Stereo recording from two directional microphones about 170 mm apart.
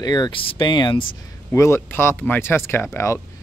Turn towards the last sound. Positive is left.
turn(degrees=15)  # may be behind; listen again after turning